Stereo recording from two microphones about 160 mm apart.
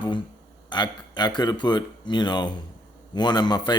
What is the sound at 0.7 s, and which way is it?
Speech, 25° left (ahead or behind).